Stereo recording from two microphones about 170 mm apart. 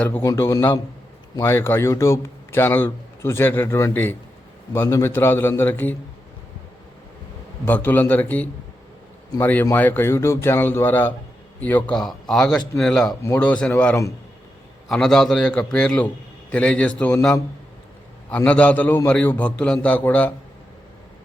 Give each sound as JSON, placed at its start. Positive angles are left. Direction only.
{"t": 0.0, "sound": "a man's voice", "side_deg": 15}
{"t": 7.7, "sound": "a man's voice", "side_deg": 10}
{"t": 18.3, "sound": "a man's voice", "side_deg": 5}